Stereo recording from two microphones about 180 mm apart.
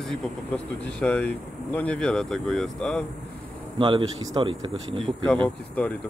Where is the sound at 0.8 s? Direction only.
5° left (ahead or behind).